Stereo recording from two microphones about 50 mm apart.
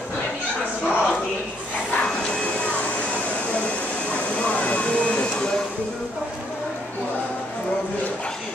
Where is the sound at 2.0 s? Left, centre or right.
Centre.